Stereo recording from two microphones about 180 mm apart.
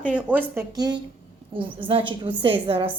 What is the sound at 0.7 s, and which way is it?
A woman's voice, 20° right (ahead or behind).